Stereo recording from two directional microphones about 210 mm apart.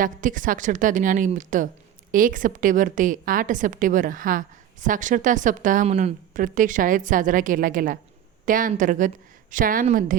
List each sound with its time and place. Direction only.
0.0 s a woman's voice: 40° right (ahead or behind)